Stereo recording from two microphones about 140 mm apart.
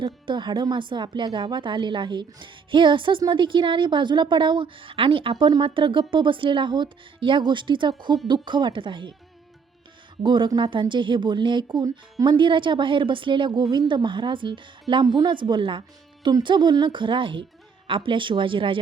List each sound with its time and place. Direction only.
0.0 s speech: 35° right (ahead or behind)
10.2 s speech: 35° right (ahead or behind)